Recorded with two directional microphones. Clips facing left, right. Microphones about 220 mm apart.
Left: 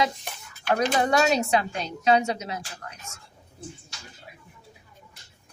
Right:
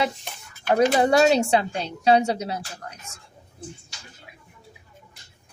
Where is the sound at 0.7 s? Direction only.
30° right (ahead or behind).